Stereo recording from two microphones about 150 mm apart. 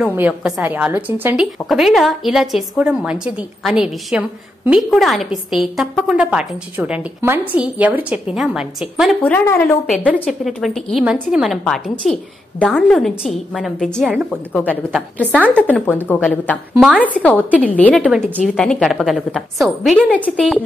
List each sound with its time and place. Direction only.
0.0 s a woman's voice: 10° right (ahead or behind)
9.2 s speech: 15° left (ahead or behind)
9.8 s a woman's voice: 5° left (ahead or behind)
15.7 s speech: 15° left (ahead or behind)
18.3 s a woman's voice: 5° right (ahead or behind)